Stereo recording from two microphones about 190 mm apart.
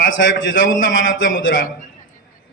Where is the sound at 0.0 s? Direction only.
90° left.